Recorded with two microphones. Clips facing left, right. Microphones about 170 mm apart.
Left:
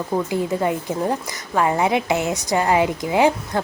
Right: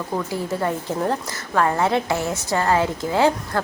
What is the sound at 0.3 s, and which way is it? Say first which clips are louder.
A woman's voice: left 3 dB; 15° left (ahead or behind).